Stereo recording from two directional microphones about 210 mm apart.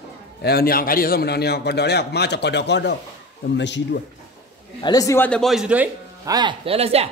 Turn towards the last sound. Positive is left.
turn(degrees=-30)  # may be behind; listen again after turning